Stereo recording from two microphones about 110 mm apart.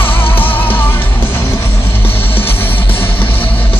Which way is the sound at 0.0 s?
20° left (ahead or behind).